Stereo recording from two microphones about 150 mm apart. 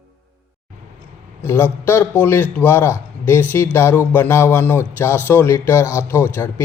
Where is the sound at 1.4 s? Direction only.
15° left (ahead or behind).